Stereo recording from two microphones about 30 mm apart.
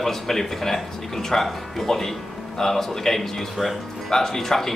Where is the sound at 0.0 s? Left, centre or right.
Centre.